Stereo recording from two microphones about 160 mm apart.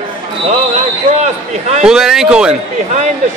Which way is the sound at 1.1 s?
45° right (ahead or behind).